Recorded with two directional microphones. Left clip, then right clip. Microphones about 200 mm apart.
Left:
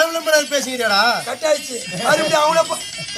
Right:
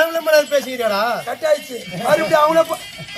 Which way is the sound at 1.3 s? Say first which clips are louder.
Right 1 dB; 5° right (ahead or behind).